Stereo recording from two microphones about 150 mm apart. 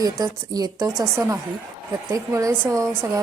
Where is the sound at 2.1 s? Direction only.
20° right (ahead or behind).